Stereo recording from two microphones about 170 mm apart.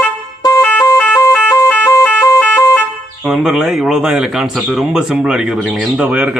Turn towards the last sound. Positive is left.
turn(degrees=-5)  # may be behind; listen again after turning